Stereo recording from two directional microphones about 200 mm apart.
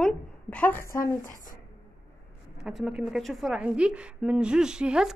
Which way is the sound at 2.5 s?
Centre (ahead or behind).